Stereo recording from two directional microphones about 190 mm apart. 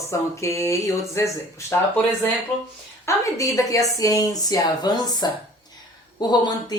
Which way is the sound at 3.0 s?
15° left (ahead or behind).